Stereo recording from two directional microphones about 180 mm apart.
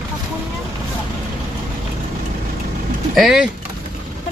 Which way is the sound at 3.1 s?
Centre (ahead or behind).